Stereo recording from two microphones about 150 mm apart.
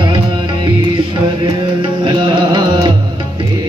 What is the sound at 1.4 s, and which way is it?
Music, 30° right (ahead or behind).